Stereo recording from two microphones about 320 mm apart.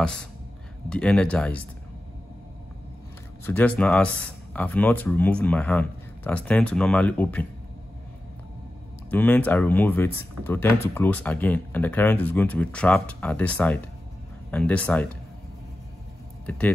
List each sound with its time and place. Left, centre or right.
0.8 s speech: centre
3.4 s speech: centre
9.1 s speech: centre
16.4 s speech: centre